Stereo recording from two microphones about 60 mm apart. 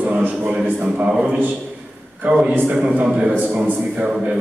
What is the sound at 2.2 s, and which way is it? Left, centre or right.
A man's voice, right.